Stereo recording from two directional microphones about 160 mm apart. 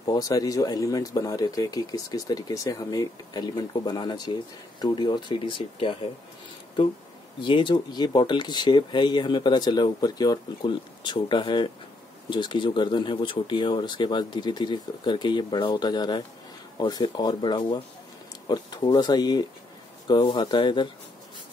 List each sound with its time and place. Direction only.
0.0 s speech: 25° left (ahead or behind)
7.3 s speech: 30° left (ahead or behind)